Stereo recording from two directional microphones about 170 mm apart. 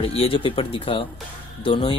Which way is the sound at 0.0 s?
35° left (ahead or behind).